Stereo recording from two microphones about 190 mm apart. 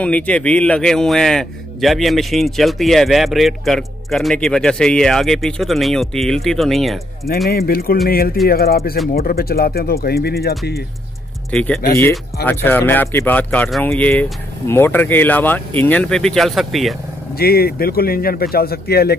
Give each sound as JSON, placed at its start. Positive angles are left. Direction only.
{"t": 0.0, "sound": "a man's voice", "side_deg": 5}
{"t": 7.4, "sound": "speech", "side_deg": 55}
{"t": 11.5, "sound": "a man's voice", "side_deg": 5}
{"t": 17.4, "sound": "speech", "side_deg": 55}